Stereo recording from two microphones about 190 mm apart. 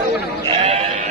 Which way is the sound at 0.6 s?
40° right (ahead or behind).